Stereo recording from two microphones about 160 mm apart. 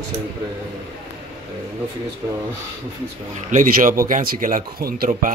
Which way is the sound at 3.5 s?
55° right (ahead or behind).